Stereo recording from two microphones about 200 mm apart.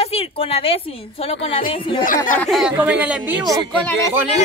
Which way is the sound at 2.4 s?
Centre (ahead or behind).